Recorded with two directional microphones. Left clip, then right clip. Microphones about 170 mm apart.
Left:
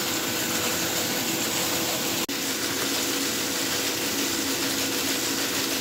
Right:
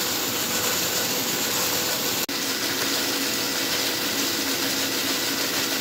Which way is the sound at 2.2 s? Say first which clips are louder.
Right 2 dB; centre (ahead or behind).